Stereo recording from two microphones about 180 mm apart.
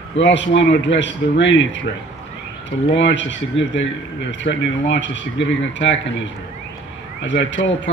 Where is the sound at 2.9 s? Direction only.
90° left.